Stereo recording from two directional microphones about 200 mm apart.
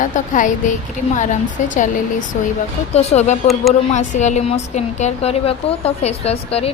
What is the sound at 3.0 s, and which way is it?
A woman's voice, 35° left (ahead or behind).